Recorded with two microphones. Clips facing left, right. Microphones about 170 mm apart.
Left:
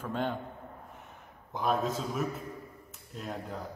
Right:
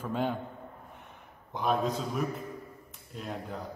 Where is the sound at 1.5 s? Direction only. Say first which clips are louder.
Right 1 dB; centre (ahead or behind).